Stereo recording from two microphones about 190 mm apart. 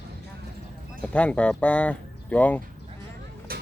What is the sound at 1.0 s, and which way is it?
Speech, 5° left (ahead or behind).